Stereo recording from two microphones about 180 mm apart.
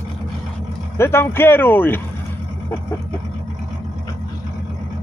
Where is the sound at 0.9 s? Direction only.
15° left (ahead or behind).